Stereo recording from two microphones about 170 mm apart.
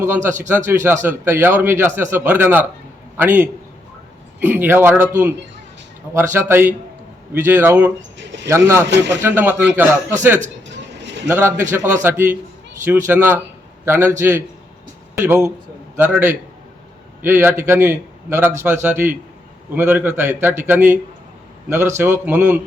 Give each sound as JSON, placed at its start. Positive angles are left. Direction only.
{"t": 0.0, "sound": "a man's voice", "side_deg": -15}
{"t": 6.1, "sound": "a man's voice", "side_deg": -15}
{"t": 10.7, "sound": "a sound", "side_deg": -90}
{"t": 11.3, "sound": "a man's voice", "side_deg": -15}